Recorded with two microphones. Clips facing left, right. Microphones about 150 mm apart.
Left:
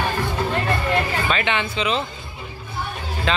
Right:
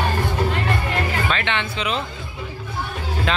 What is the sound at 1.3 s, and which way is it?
Speech, 5° left (ahead or behind).